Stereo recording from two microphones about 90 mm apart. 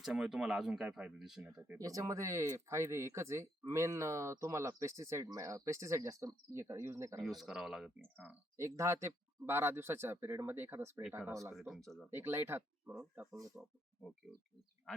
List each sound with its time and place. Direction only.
0.0 s speech: 5° right (ahead or behind)
1.8 s speech: 35° right (ahead or behind)
7.3 s speech: 5° right (ahead or behind)
8.1 s speech: 20° right (ahead or behind)
8.5 s speech: 35° right (ahead or behind)
11.5 s speech: centre (ahead or behind)
12.1 s speech: 25° right (ahead or behind)
14.3 s speech: centre (ahead or behind)